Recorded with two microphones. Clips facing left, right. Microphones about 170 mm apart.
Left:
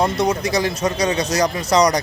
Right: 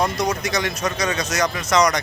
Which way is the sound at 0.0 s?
30° left (ahead or behind).